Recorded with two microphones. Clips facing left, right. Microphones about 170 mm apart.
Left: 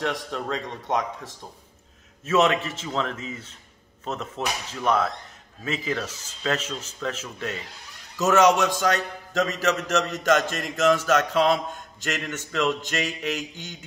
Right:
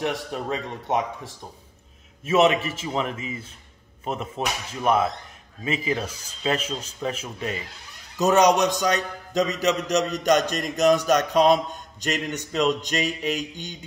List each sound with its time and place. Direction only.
0.0 s a man's voice: 10° right (ahead or behind)
2.2 s a man's voice: 10° right (ahead or behind)